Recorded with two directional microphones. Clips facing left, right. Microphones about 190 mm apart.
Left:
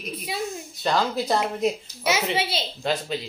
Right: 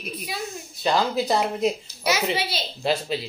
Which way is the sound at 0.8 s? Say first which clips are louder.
Right 2 dB; centre (ahead or behind).